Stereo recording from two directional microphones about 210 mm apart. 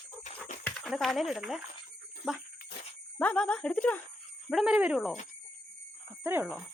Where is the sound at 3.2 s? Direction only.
5° left (ahead or behind).